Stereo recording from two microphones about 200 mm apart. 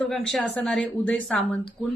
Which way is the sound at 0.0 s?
5° left (ahead or behind).